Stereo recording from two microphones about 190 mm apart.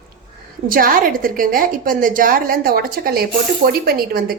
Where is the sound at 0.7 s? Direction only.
50° right (ahead or behind).